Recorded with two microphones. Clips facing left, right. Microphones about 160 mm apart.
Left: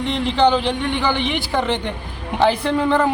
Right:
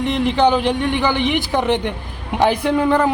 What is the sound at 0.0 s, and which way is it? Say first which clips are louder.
Speech: right 1 dB; 10° right (ahead or behind).